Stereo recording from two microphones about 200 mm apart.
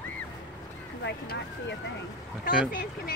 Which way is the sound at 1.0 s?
60° left (ahead or behind).